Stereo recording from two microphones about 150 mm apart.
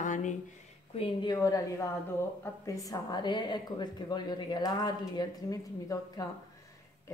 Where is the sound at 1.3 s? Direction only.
25° left (ahead or behind).